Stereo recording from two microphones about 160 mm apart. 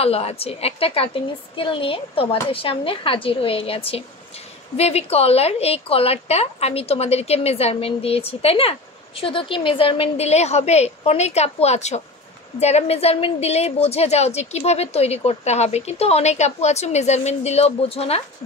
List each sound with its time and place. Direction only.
0.0 s a woman's voice: 40° left (ahead or behind)